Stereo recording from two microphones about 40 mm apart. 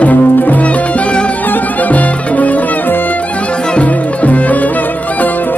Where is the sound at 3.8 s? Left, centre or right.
Left.